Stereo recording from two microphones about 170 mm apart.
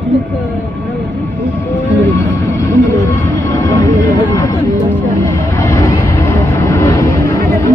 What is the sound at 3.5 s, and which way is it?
Vehicle, 20° left (ahead or behind).